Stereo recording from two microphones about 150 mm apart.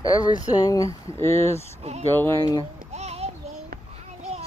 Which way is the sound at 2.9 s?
45° right (ahead or behind).